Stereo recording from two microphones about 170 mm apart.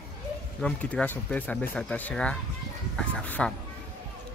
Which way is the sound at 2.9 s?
5° left (ahead or behind).